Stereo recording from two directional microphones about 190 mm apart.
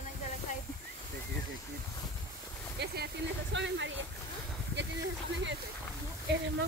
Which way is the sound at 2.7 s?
60° right (ahead or behind).